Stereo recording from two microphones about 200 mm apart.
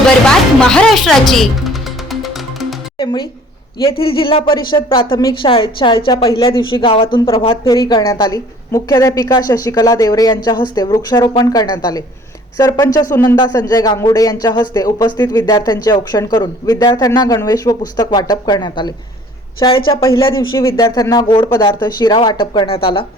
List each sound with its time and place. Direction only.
0.3 s music: 5° left (ahead or behind)
3.0 s speech: 20° left (ahead or behind)